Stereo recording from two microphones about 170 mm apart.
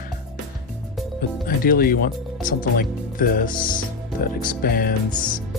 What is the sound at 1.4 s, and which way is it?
Speech, 60° left (ahead or behind).